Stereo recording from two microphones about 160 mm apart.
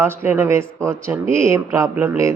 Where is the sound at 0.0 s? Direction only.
15° right (ahead or behind).